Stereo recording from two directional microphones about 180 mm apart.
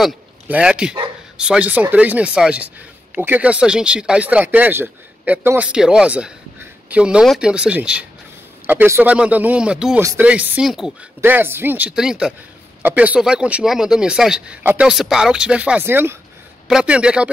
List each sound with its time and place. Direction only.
0.0 s speech: 5° right (ahead or behind)